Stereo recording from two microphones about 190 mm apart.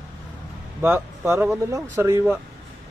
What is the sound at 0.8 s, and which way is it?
Speech, 15° right (ahead or behind).